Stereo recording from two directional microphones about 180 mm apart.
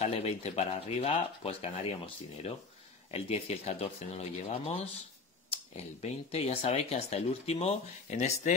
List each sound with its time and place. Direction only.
0.0 s speech: 35° left (ahead or behind)